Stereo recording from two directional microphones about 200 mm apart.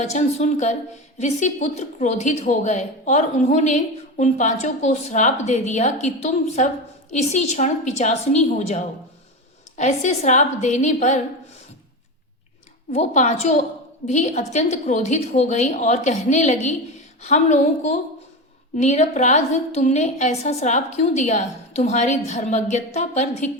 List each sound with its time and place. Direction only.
0.0 s a woman's voice: 35° left (ahead or behind)
12.9 s a woman's voice: 35° left (ahead or behind)